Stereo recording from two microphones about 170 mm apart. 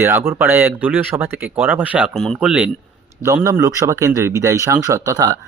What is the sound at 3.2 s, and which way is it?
Speech, 15° right (ahead or behind).